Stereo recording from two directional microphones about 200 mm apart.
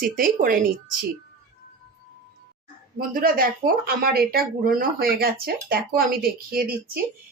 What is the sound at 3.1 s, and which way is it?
Speech, 45° right (ahead or behind).